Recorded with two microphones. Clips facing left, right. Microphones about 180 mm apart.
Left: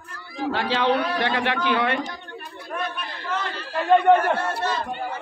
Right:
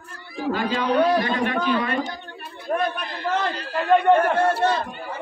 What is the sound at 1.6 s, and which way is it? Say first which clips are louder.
Speech: even; 75° left (ahead or behind).